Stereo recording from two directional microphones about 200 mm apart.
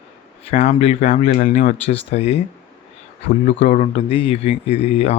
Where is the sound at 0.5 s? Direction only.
35° left (ahead or behind).